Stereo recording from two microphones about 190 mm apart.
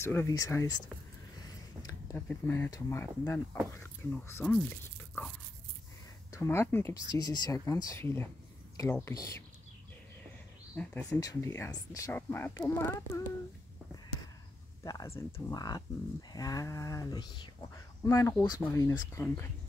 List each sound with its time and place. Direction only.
0.0 s speech: 15° left (ahead or behind)
1.8 s speech: 15° left (ahead or behind)
6.3 s speech: 15° left (ahead or behind)
10.8 s speech: 5° left (ahead or behind)
11.1 s speech: 20° left (ahead or behind)
14.8 s speech: 15° left (ahead or behind)